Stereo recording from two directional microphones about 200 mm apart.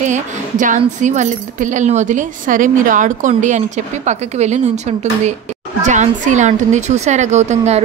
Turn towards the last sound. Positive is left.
turn(degrees=-35)  # may be behind; listen again after turning